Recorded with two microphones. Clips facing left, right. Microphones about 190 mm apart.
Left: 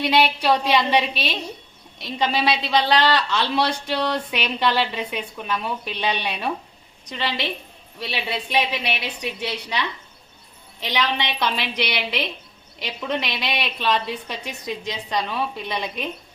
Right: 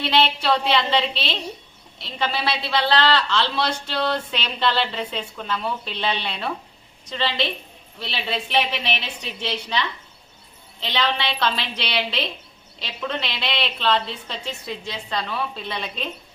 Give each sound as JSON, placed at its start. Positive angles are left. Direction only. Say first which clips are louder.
{"t": 0.0, "sound": "a woman's voice", "louder": "left 2 dB", "side_deg": 15}